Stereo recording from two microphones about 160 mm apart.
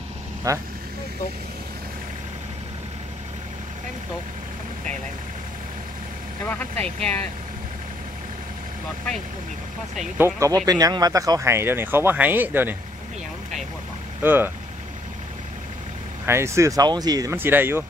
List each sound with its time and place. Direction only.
0.5 s speech: 20° right (ahead or behind)
6.4 s speech: 10° left (ahead or behind)
10.1 s speech: 15° right (ahead or behind)
14.2 s speech: 15° right (ahead or behind)
16.3 s speech: 15° right (ahead or behind)